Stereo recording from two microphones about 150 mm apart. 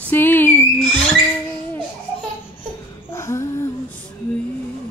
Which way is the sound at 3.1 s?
20° left (ahead or behind).